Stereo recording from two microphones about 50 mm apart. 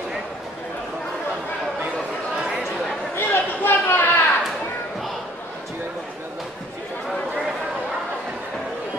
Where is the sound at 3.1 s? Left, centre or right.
Left.